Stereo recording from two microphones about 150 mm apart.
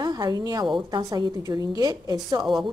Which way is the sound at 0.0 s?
25° right (ahead or behind).